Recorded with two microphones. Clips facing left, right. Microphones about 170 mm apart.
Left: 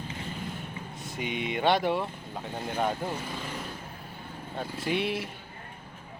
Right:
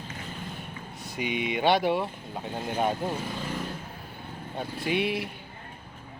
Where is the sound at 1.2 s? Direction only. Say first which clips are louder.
Right 2 dB; 15° right (ahead or behind).